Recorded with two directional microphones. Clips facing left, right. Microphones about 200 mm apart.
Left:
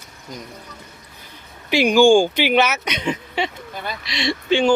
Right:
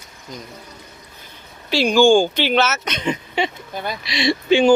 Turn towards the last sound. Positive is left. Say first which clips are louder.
# right 3 dB
turn(degrees=-10)  # may be behind; listen again after turning